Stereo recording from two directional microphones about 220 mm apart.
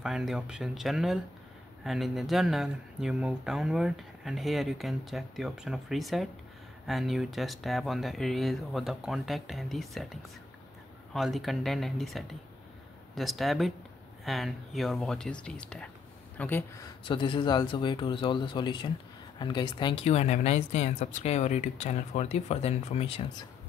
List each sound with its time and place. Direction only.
0.0 s speech: centre (ahead or behind)
11.1 s speech: centre (ahead or behind)
17.0 s speech: 20° left (ahead or behind)